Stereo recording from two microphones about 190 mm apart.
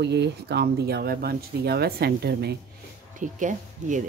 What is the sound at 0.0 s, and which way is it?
Speech, 65° right (ahead or behind).